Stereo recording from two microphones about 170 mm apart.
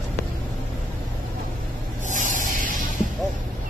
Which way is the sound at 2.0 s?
50° right (ahead or behind).